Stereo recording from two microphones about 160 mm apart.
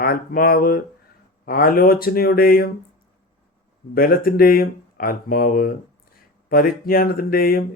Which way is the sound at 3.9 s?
65° left (ahead or behind).